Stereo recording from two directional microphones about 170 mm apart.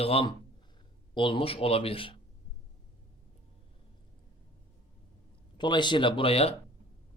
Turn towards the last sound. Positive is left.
turn(degrees=35)  # may be behind; listen again after turning